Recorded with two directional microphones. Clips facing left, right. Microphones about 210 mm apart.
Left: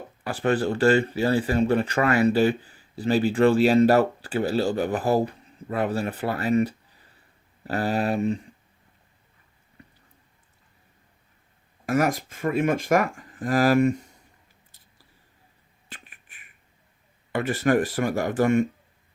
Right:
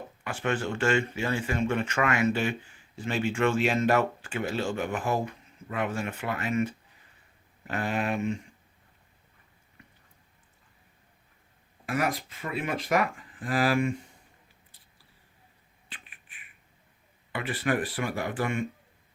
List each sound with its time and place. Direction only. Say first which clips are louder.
0.3 s speech: left 6 dB; 35° left (ahead or behind)
9.8 s a sound: left 5 dB; 35° left (ahead or behind)
11.9 s speech: left 6 dB; 45° left (ahead or behind)
15.9 s finger snapping: left 4 dB; 45° left (ahead or behind)
17.3 s speech: left 7 dB; 45° left (ahead or behind)